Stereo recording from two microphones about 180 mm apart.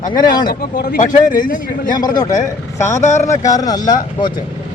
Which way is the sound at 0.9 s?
45° left (ahead or behind).